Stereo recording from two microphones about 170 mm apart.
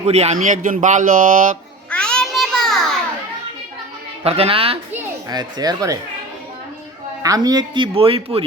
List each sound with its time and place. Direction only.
0.0 s speech: 40° right (ahead or behind)
1.9 s a sound: 5° left (ahead or behind)
4.2 s speech: 35° right (ahead or behind)
5.3 s speech: 25° right (ahead or behind)
7.2 s speech: 20° right (ahead or behind)